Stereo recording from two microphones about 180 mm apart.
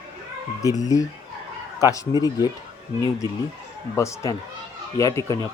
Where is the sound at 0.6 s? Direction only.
20° left (ahead or behind).